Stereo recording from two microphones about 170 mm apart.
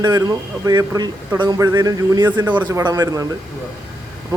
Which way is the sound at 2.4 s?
10° right (ahead or behind).